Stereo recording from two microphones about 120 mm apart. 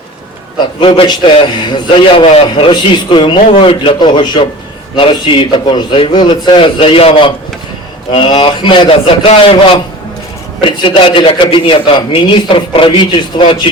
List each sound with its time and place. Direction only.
0.8 s a man's voice: 45° left (ahead or behind)
2.2 s a man's voice: 55° left (ahead or behind)
3.4 s a man's voice: 55° left (ahead or behind)